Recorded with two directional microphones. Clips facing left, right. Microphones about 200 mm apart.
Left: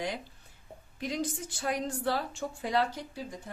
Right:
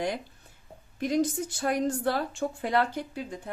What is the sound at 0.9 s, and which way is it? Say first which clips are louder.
A woman's voice: right 8 dB; 50° right (ahead or behind).